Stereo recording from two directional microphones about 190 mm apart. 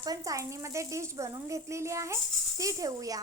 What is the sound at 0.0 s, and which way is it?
A woman's voice, 20° right (ahead or behind).